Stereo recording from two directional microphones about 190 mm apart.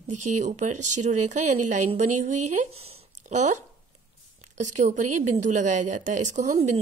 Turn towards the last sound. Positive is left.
turn(degrees=-40)  # may be behind; listen again after turning